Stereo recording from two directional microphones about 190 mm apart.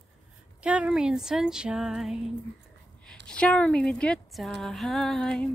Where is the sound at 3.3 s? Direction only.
5° left (ahead or behind).